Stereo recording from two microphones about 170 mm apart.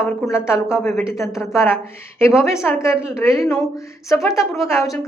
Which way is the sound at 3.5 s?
Centre (ahead or behind).